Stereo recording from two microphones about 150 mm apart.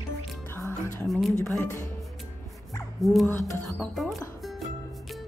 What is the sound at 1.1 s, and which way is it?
Speech, centre (ahead or behind).